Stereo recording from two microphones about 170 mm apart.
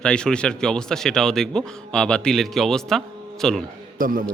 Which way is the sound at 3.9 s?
55° right (ahead or behind).